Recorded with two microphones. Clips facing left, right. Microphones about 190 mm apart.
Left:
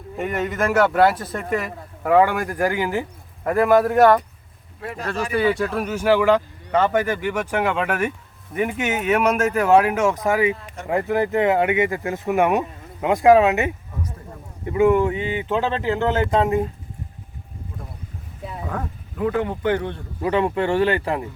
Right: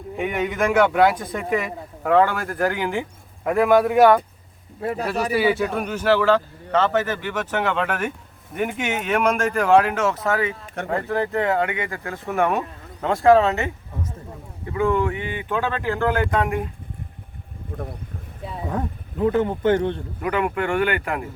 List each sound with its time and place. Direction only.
0.2 s speech: centre (ahead or behind); by 13.7 s 15° left (ahead or behind)
14.7 s a man's voice: 20° left (ahead or behind)
18.7 s speech: 20° right (ahead or behind)
20.2 s a man's voice: 25° left (ahead or behind)